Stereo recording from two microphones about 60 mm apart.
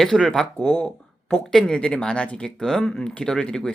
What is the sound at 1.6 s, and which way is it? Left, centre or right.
Speech, centre.